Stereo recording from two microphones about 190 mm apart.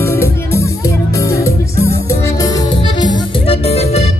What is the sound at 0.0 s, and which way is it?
Music, 15° left (ahead or behind).